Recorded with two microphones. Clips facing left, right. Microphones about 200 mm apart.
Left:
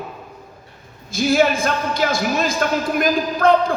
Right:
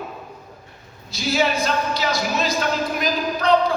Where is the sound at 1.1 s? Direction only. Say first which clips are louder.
Left 5 dB; 50° left (ahead or behind).